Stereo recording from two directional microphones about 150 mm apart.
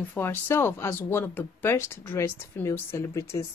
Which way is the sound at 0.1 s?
15° left (ahead or behind).